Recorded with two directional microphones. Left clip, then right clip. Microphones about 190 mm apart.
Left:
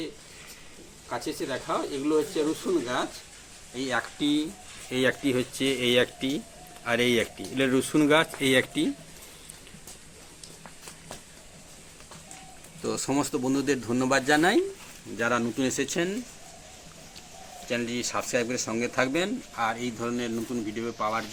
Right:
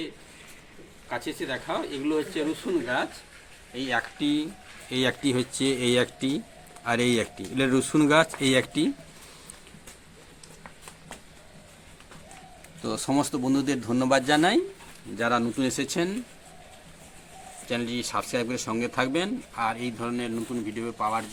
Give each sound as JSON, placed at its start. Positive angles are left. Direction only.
{"t": 1.1, "sound": "speech", "side_deg": -10}
{"t": 4.9, "sound": "speech", "side_deg": -50}
{"t": 12.8, "sound": "speech", "side_deg": -50}
{"t": 18.1, "sound": "speech", "side_deg": -40}